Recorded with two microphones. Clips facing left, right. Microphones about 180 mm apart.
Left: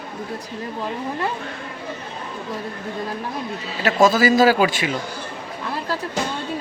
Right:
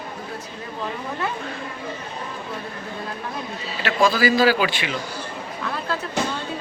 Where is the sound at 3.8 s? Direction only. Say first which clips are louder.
Left 3 dB; 45° left (ahead or behind).